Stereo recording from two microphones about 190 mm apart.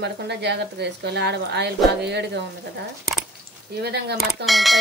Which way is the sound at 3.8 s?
60° right (ahead or behind).